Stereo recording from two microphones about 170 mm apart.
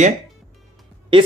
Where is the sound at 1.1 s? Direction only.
30° right (ahead or behind).